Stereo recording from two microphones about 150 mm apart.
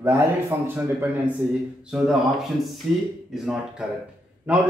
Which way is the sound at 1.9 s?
5° right (ahead or behind).